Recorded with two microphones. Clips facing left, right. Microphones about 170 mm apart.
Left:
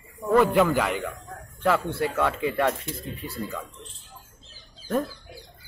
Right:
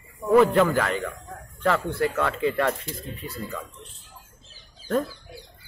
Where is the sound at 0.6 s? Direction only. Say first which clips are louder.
Even; 10° left (ahead or behind).